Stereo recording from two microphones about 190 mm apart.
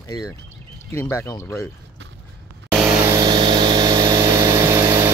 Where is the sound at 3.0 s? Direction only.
20° right (ahead or behind).